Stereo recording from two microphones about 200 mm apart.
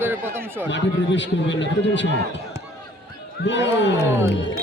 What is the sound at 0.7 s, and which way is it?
A man's voice, 65° left (ahead or behind).